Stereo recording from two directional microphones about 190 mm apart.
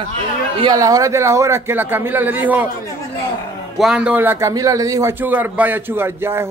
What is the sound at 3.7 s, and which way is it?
A man's voice, centre (ahead or behind).